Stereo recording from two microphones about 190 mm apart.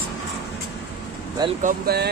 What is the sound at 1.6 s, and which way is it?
Speech, 55° right (ahead or behind).